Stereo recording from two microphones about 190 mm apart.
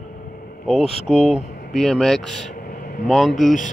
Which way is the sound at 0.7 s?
Centre (ahead or behind).